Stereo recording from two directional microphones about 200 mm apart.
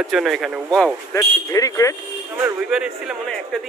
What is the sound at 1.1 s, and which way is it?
Speech, 15° left (ahead or behind).